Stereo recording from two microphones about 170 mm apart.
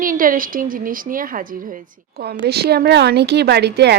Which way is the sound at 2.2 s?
70° right (ahead or behind).